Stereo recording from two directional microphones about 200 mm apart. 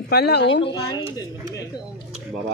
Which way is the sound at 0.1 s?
55° left (ahead or behind).